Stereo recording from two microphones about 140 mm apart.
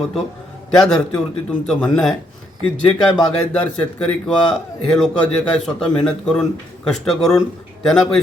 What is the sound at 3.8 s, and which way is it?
A man's voice, 5° left (ahead or behind).